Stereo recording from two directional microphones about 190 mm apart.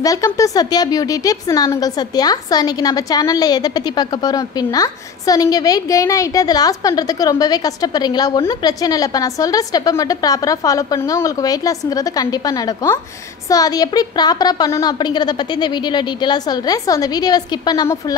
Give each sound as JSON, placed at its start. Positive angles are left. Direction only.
{"t": 0.0, "sound": "a woman's voice", "side_deg": 15}